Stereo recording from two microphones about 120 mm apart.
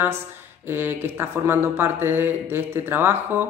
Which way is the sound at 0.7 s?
20° right (ahead or behind).